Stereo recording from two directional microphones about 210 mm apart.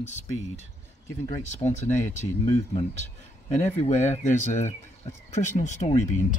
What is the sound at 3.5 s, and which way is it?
Speech, 35° left (ahead or behind).